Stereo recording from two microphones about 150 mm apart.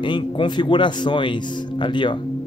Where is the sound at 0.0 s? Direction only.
30° left (ahead or behind).